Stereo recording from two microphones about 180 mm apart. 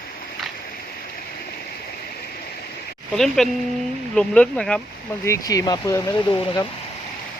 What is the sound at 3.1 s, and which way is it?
Speech, centre (ahead or behind).